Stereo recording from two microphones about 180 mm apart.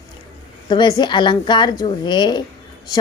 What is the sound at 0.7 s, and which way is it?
Speech, 25° left (ahead or behind).